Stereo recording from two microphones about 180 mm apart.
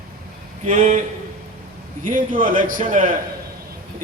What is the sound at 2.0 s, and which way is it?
A man's voice, 50° right (ahead or behind).